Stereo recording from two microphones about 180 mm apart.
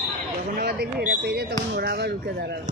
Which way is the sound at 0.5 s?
60° right (ahead or behind).